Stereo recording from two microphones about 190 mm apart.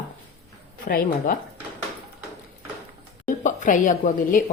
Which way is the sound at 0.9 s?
50° left (ahead or behind).